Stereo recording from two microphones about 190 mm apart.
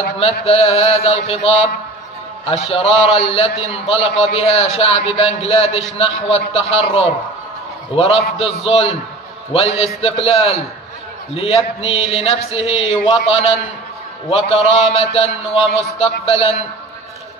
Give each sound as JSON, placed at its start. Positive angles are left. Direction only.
{"t": 0.2, "sound": "speech", "side_deg": 30}